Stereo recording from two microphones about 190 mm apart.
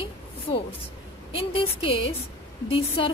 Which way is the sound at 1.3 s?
30° left (ahead or behind).